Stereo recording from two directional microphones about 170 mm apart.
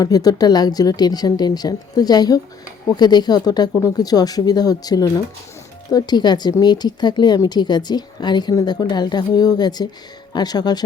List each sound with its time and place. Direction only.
0.0 s speech: 20° left (ahead or behind)